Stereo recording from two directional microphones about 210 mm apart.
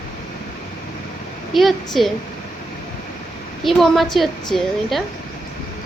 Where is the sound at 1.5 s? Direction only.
Centre (ahead or behind).